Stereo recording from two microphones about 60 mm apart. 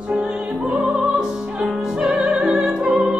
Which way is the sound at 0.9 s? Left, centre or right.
Centre.